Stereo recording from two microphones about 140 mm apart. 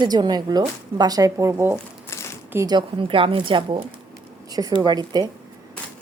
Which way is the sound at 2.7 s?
35° right (ahead or behind).